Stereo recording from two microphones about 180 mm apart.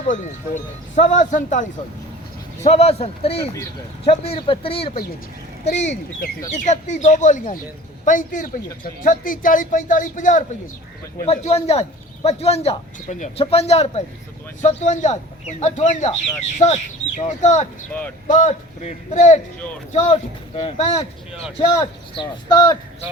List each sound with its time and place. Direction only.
0.1 s a man's voice: 40° left (ahead or behind)
2.6 s a man's voice: 35° left (ahead or behind)
22.1 s speech: 25° left (ahead or behind)